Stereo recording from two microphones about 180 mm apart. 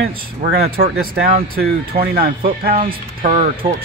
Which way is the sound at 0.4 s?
55° right (ahead or behind).